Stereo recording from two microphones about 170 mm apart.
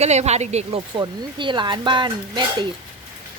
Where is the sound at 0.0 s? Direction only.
40° right (ahead or behind).